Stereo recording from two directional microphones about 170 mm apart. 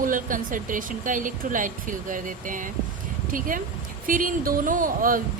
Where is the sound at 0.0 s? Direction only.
50° right (ahead or behind).